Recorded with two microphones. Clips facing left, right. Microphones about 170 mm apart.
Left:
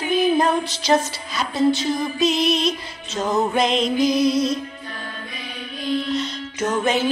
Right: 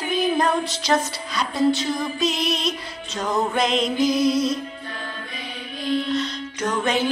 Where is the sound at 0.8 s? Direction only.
Centre (ahead or behind).